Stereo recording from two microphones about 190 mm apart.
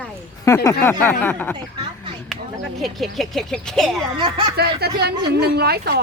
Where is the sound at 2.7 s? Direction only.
Centre (ahead or behind).